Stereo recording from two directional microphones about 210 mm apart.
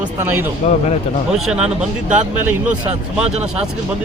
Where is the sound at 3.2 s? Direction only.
30° right (ahead or behind).